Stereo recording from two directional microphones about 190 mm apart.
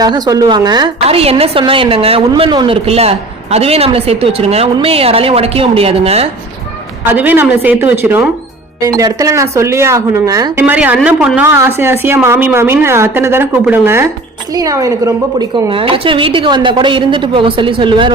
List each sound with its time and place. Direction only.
0.0 s a woman's voice: 20° right (ahead or behind)
7.0 s a woman's voice: 10° right (ahead or behind)
10.6 s a woman's voice: 10° right (ahead or behind); by 18.1 s 25° right (ahead or behind)